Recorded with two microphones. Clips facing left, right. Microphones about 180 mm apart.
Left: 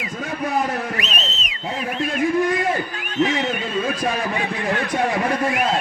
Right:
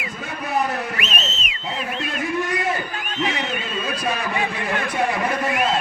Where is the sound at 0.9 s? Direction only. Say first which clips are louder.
Left 1 dB; 35° left (ahead or behind).